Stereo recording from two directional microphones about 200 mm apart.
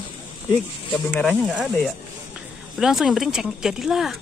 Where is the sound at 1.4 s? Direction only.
Centre (ahead or behind).